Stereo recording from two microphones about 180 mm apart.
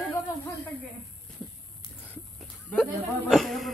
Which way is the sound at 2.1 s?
5° left (ahead or behind).